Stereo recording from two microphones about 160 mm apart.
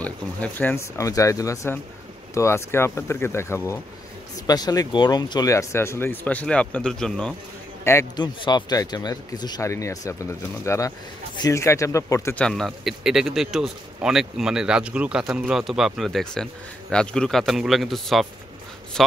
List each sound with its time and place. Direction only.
0.0 s speech: 10° left (ahead or behind)
7.8 s speech: 15° left (ahead or behind)
12.4 s speech: 5° left (ahead or behind)